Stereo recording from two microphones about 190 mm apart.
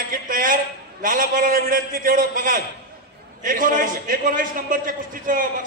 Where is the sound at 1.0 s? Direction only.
45° right (ahead or behind).